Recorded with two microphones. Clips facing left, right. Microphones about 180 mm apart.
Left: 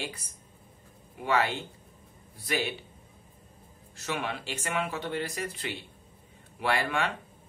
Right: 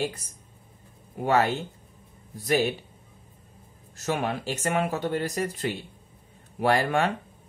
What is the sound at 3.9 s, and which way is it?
Speech, 45° right (ahead or behind).